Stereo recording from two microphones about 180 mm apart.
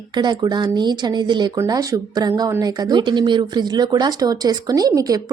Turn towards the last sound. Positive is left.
turn(degrees=-20)  # may be behind; listen again after turning